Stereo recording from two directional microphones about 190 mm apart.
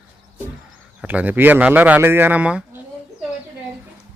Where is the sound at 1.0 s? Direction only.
10° right (ahead or behind).